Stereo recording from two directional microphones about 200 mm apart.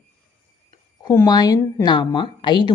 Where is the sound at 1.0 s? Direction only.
15° left (ahead or behind).